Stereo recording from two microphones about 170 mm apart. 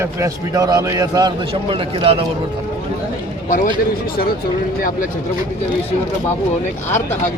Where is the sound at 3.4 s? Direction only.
50° left (ahead or behind).